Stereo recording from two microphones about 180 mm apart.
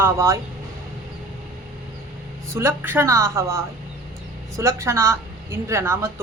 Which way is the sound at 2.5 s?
15° right (ahead or behind).